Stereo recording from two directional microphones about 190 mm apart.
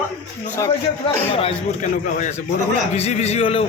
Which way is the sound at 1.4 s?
30° left (ahead or behind).